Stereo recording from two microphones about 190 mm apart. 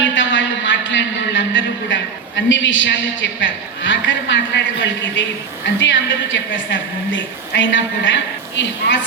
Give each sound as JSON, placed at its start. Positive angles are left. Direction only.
{"t": 0.0, "sound": "music", "side_deg": 75}
{"t": 5.8, "sound": "a woman's voice", "side_deg": 75}